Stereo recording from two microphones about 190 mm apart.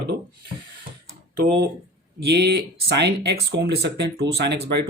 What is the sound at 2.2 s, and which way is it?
Speech, 60° right (ahead or behind).